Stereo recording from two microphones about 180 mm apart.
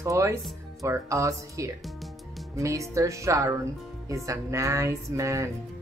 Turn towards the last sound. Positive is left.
turn(degrees=-15)  # may be behind; listen again after turning